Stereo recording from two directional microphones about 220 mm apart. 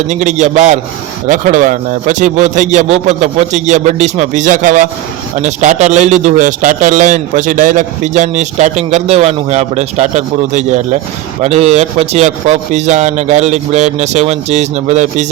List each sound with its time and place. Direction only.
0.1 s a man's voice: 30° right (ahead or behind)